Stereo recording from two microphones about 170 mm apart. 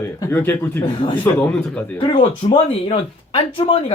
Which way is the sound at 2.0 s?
30° left (ahead or behind).